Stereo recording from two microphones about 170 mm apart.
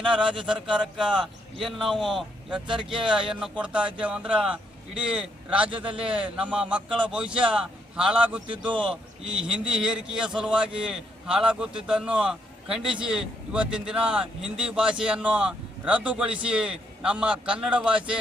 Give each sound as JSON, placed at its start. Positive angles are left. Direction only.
{"t": 0.0, "sound": "speech", "side_deg": -30}
{"t": 0.4, "sound": "speech", "side_deg": -5}
{"t": 2.6, "sound": "speech", "side_deg": -30}
{"t": 3.1, "sound": "a man's voice", "side_deg": -5}
{"t": 5.7, "sound": "speech", "side_deg": -30}
{"t": 6.1, "sound": "a man's voice", "side_deg": -5}